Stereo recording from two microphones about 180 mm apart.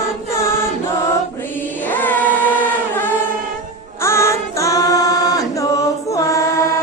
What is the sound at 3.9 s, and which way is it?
Singing, 15° left (ahead or behind).